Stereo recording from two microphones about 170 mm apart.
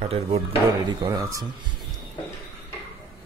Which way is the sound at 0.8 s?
25° right (ahead or behind).